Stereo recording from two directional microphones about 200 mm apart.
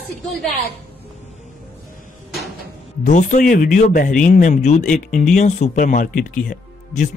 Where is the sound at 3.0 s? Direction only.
40° left (ahead or behind).